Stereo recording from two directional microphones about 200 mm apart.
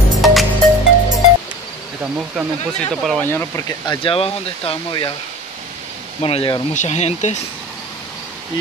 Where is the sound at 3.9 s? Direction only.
25° left (ahead or behind).